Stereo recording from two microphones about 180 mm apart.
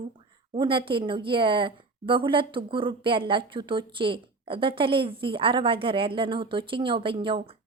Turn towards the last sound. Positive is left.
turn(degrees=-30)  # may be behind; listen again after turning